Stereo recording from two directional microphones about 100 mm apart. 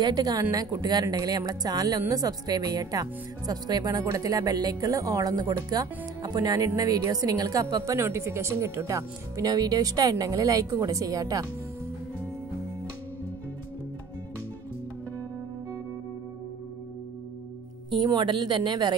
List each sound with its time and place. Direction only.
0.0 s a woman's voice: 40° right (ahead or behind)
17.8 s a woman's voice: 50° right (ahead or behind)